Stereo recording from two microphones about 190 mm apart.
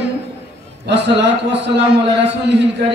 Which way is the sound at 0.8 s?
65° right (ahead or behind).